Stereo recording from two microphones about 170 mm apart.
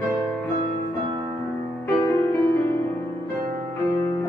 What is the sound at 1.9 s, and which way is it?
Music, 15° left (ahead or behind).